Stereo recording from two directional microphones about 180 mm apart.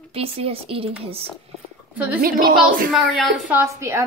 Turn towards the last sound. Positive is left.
turn(degrees=-15)  # may be behind; listen again after turning